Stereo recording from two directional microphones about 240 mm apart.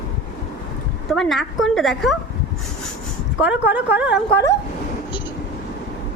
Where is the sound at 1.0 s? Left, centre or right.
Centre.